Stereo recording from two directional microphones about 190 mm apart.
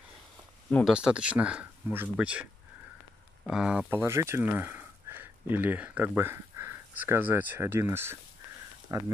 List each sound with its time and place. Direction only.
0.7 s speech: 5° left (ahead or behind)
0.9 s speech: 5° right (ahead or behind)
3.4 s speech: 5° right (ahead or behind)